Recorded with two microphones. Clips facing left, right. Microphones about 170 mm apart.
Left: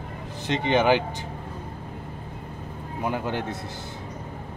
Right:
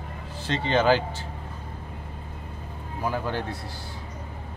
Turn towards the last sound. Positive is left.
turn(degrees=20)  # may be behind; listen again after turning